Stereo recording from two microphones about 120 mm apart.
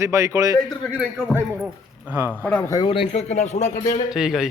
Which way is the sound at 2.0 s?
15° right (ahead or behind).